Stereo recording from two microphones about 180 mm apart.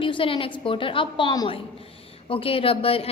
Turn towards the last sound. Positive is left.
turn(degrees=30)  # may be behind; listen again after turning